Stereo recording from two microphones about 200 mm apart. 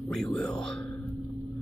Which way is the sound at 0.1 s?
5° left (ahead or behind).